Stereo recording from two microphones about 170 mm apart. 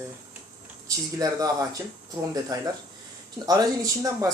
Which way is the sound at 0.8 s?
20° right (ahead or behind).